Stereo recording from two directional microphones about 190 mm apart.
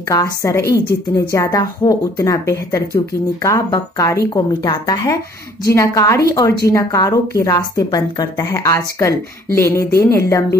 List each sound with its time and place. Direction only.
0.1 s a woman's voice: 15° left (ahead or behind)